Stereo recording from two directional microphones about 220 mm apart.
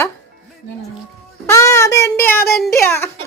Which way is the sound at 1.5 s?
15° left (ahead or behind).